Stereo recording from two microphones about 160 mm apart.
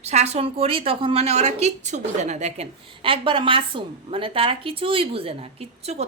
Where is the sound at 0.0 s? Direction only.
45° right (ahead or behind).